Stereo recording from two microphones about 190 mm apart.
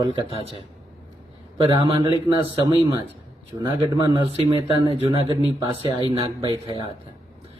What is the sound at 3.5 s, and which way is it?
Speech, 25° right (ahead or behind).